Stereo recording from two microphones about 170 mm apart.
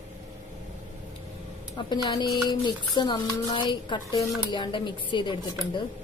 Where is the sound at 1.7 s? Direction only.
25° left (ahead or behind).